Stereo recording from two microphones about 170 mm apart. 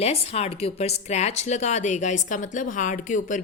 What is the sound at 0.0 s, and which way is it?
A woman's voice, 40° left (ahead or behind).